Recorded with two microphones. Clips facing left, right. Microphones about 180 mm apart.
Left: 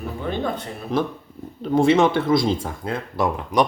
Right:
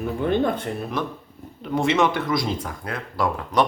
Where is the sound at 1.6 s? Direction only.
30° left (ahead or behind).